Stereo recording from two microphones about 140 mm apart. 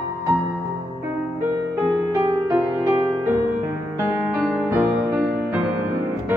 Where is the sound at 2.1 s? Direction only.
20° right (ahead or behind).